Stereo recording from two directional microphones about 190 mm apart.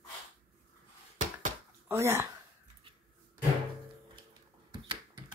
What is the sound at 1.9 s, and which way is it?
Speech, 15° right (ahead or behind).